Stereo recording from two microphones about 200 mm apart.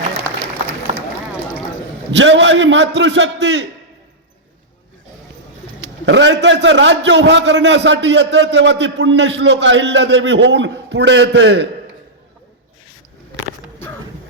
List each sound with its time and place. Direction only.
0.9 s run: 35° right (ahead or behind)
2.0 s a man's voice: 65° right (ahead or behind)
6.1 s a man's voice: 65° right (ahead or behind)